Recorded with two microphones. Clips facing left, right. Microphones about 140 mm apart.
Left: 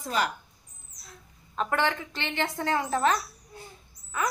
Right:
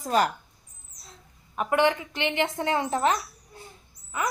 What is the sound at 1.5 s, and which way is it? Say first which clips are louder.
Speech: right 4 dB; 15° right (ahead or behind).